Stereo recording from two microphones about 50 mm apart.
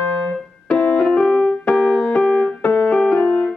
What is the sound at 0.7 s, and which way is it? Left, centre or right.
Keyboard, centre.